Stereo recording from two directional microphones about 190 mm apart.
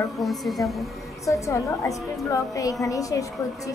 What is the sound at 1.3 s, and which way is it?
A woman's voice, 15° left (ahead or behind).